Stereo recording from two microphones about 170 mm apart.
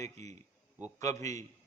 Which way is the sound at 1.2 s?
20° left (ahead or behind).